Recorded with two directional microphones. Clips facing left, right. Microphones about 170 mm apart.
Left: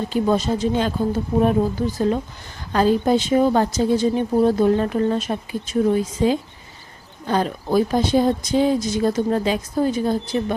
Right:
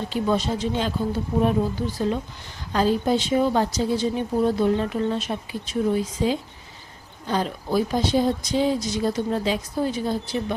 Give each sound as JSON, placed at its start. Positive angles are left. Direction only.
{"t": 0.1, "sound": "speech", "side_deg": 45}